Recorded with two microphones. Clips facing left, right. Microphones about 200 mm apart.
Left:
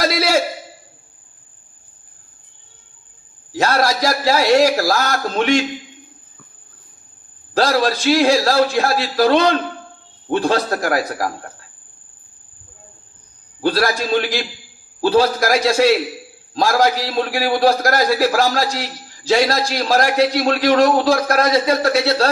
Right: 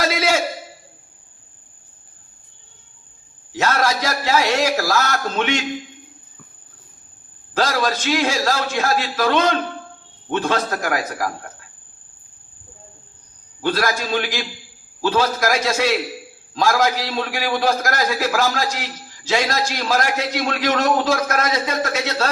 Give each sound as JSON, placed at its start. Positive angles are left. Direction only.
{"t": 0.0, "sound": "a sound", "side_deg": 35}
{"t": 3.5, "sound": "a man's voice", "side_deg": 35}
{"t": 7.5, "sound": "a man's voice", "side_deg": 35}
{"t": 13.6, "sound": "a man's voice", "side_deg": 35}